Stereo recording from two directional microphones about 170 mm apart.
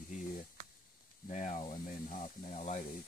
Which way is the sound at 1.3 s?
45° left (ahead or behind).